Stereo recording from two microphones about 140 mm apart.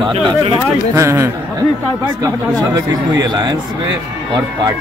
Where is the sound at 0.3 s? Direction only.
35° right (ahead or behind).